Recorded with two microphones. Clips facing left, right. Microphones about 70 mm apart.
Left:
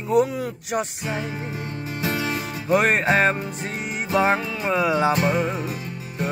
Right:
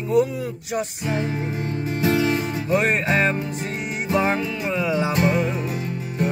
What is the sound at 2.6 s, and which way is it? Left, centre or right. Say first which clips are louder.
Music: left 2 dB; left.